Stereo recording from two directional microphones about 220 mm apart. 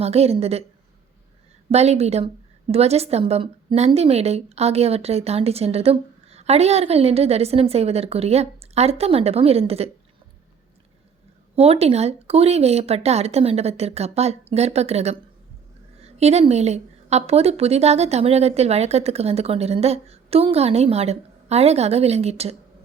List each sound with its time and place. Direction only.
0.0 s a woman's voice: 30° right (ahead or behind)
1.7 s a woman's voice: 30° right (ahead or behind)
11.5 s a woman's voice: 30° right (ahead or behind)